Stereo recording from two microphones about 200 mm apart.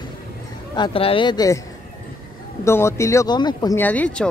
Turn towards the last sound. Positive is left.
turn(degrees=5)  # may be behind; listen again after turning